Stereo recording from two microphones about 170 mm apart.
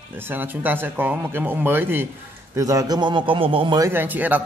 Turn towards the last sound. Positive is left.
turn(degrees=-10)  # may be behind; listen again after turning